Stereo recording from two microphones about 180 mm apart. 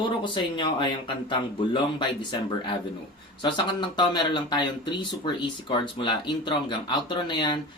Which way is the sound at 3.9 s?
25° left (ahead or behind).